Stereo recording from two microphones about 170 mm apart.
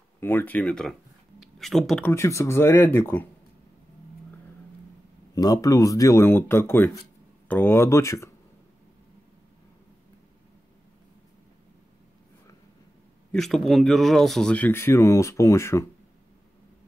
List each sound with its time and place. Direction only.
0.2 s speech: 10° left (ahead or behind)
2.1 s speech: 15° left (ahead or behind)
5.3 s speech: 20° left (ahead or behind)
13.3 s speech: centre (ahead or behind)